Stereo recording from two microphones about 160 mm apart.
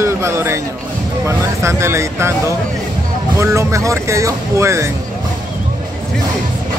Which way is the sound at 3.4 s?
15° right (ahead or behind).